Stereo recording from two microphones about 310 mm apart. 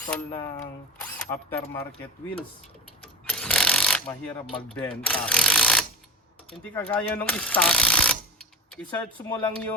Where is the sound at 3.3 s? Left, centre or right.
Centre.